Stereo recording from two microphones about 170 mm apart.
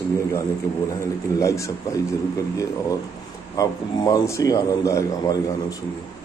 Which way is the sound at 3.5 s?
20° left (ahead or behind).